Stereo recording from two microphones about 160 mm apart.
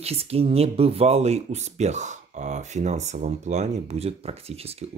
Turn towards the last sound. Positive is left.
turn(degrees=-40)  # may be behind; listen again after turning